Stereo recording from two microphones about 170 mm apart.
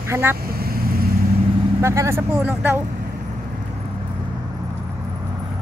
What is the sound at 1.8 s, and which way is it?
Speech, 15° right (ahead or behind).